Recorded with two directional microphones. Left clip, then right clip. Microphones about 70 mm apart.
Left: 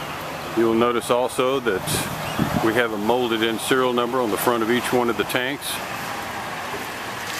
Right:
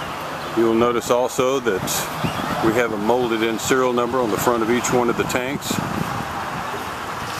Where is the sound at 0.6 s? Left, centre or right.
Centre.